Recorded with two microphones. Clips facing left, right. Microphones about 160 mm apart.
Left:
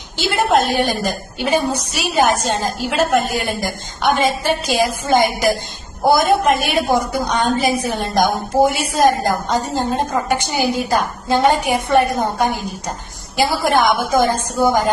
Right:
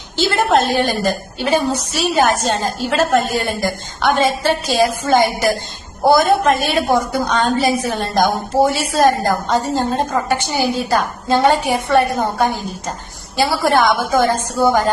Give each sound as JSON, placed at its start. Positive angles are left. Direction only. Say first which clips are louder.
{"t": 0.2, "sound": "a woman's voice", "louder": "right 1 dB", "side_deg": 15}